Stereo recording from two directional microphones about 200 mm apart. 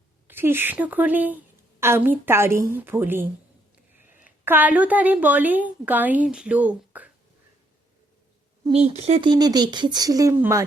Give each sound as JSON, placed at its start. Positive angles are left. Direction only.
{"t": 0.3, "sound": "a woman's voice", "side_deg": -10}
{"t": 8.6, "sound": "speech", "side_deg": -30}